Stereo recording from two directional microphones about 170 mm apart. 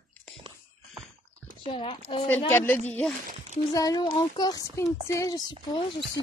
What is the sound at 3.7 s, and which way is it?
Speech, 20° left (ahead or behind).